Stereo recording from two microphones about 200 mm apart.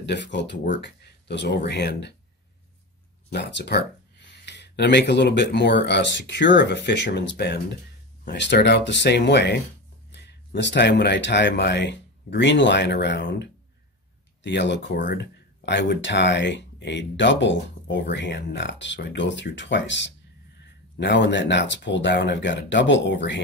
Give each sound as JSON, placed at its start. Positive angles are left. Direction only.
{"t": 0.0, "sound": "speech", "side_deg": 60}
{"t": 3.3, "sound": "speech", "side_deg": 60}